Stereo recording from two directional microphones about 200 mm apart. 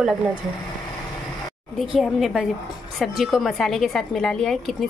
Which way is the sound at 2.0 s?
Centre (ahead or behind).